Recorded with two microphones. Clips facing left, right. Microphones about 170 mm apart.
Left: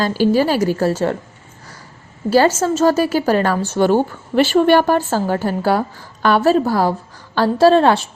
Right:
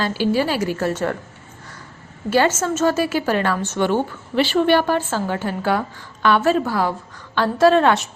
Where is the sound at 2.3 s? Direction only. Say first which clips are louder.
Left 4 dB; 35° left (ahead or behind).